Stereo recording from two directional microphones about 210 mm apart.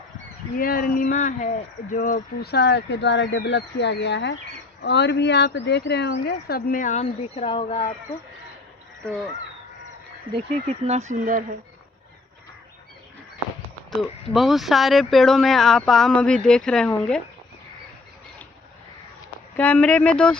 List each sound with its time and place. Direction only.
0.6 s speech: 45° left (ahead or behind); by 7.9 s 25° left (ahead or behind)
10.3 s speech: 30° right (ahead or behind)
14.3 s speech: centre (ahead or behind)
19.5 s speech: 10° left (ahead or behind)